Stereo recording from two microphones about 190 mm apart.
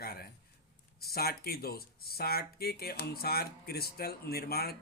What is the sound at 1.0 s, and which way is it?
Speech, 55° left (ahead or behind).